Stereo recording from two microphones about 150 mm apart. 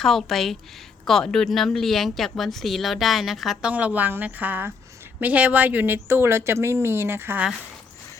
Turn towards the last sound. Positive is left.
turn(degrees=-10)  # may be behind; listen again after turning